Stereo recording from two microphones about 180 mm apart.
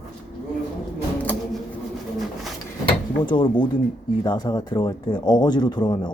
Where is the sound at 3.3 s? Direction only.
25° left (ahead or behind).